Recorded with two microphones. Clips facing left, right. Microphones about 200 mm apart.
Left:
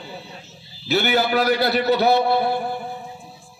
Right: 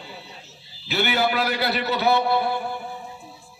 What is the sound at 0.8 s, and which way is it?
A man's voice, 40° left (ahead or behind).